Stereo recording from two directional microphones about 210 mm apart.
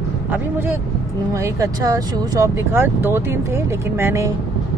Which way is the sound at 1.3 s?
15° right (ahead or behind).